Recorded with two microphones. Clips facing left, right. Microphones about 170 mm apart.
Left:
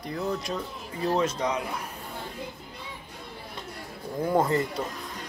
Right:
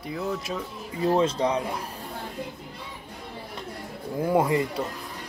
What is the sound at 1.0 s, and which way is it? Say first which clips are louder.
Speech: right 3 dB; 25° right (ahead or behind).